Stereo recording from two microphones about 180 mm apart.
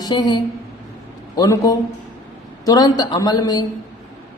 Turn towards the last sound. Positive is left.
turn(degrees=20)  # may be behind; listen again after turning